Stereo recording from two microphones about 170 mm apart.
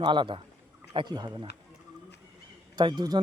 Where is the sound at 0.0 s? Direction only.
25° right (ahead or behind).